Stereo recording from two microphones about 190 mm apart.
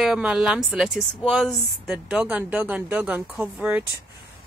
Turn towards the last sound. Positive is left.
turn(degrees=-5)  # may be behind; listen again after turning